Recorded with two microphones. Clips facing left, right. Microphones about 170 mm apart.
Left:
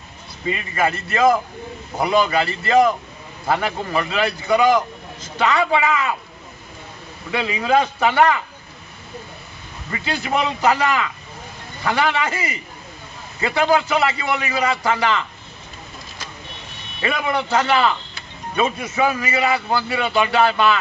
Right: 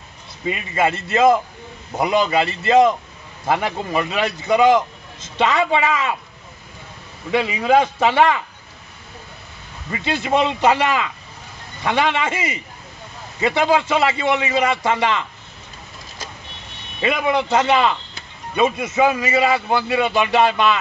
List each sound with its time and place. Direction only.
0.7 s a man's voice: 25° right (ahead or behind)
7.6 s a man's voice: 25° right (ahead or behind)
10.0 s a man's voice: 25° right (ahead or behind)
17.0 s a man's voice: 20° right (ahead or behind)